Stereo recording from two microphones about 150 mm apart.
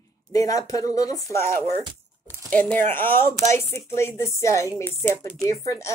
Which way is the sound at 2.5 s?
10° left (ahead or behind).